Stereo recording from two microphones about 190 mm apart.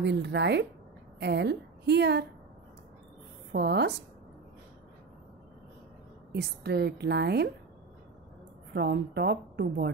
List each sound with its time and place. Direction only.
0.0 s a woman's voice: 65° right (ahead or behind)
3.5 s a woman's voice: 60° right (ahead or behind)
6.3 s a woman's voice: 60° right (ahead or behind)
8.7 s a woman's voice: 60° right (ahead or behind)